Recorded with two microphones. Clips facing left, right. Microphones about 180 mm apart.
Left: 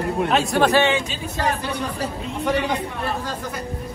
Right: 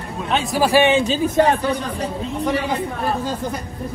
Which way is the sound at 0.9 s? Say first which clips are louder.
Right 8 dB; 30° right (ahead or behind).